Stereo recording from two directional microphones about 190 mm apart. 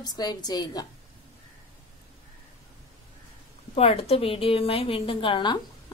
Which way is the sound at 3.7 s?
30° left (ahead or behind).